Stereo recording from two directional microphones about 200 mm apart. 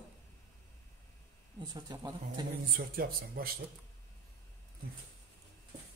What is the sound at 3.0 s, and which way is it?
Speech, 50° right (ahead or behind).